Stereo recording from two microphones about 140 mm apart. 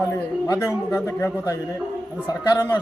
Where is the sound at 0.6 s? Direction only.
20° left (ahead or behind).